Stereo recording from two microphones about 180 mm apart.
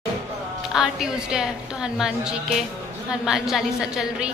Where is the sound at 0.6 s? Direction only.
Centre (ahead or behind).